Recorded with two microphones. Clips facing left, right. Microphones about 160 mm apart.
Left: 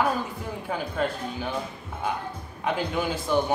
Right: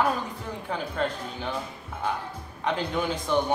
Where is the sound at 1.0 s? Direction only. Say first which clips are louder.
Left 1 dB; 5° left (ahead or behind).